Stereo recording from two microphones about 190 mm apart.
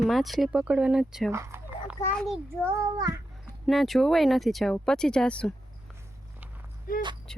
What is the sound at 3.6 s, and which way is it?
Speech, centre (ahead or behind).